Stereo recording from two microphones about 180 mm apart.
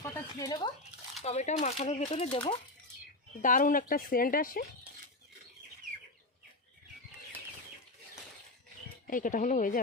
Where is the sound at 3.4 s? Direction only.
50° left (ahead or behind).